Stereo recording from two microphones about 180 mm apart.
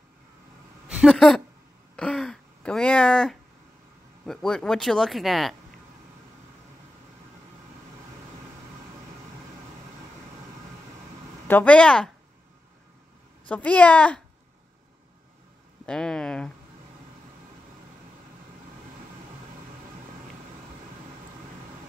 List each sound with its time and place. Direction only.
0.8 s speech: centre (ahead or behind)
2.0 s a sound: 5° left (ahead or behind)
4.3 s speech: 5° left (ahead or behind)
11.4 s a woman's voice: 10° left (ahead or behind)
13.5 s a woman's voice: 5° left (ahead or behind)
15.8 s speech: 5° left (ahead or behind)